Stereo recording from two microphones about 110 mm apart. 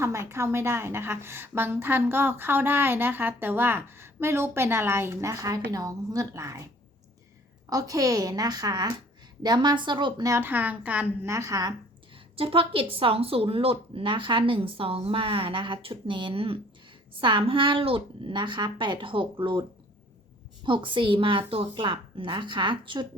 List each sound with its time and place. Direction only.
0.0 s a woman's voice: 25° right (ahead or behind)
7.7 s a woman's voice: 35° right (ahead or behind)
10.2 s a woman's voice: 20° right (ahead or behind)
11.3 s a woman's voice: 30° right (ahead or behind)
12.1 s a woman's voice: 60° right (ahead or behind)
20.7 s a woman's voice: 50° right (ahead or behind)